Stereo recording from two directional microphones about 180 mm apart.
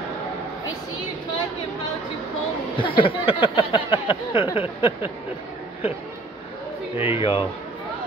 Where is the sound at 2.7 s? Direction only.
30° left (ahead or behind).